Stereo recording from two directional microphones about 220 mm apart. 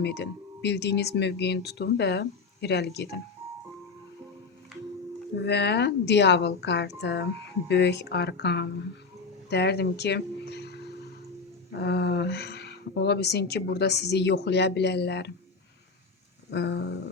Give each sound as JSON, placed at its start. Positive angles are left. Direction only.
{"t": 0.0, "sound": "speech", "side_deg": 50}
{"t": 5.5, "sound": "speech", "side_deg": 50}
{"t": 11.9, "sound": "speech", "side_deg": 50}
{"t": 16.5, "sound": "speech", "side_deg": 50}